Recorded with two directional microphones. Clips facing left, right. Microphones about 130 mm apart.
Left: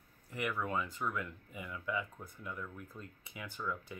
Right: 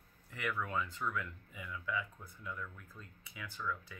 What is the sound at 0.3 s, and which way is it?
Speech, 15° left (ahead or behind).